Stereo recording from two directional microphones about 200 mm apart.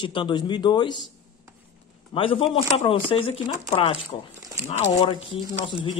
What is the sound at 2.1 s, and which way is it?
Speech, 25° left (ahead or behind).